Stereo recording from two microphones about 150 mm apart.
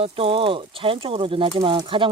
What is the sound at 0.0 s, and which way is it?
Speech, 35° right (ahead or behind).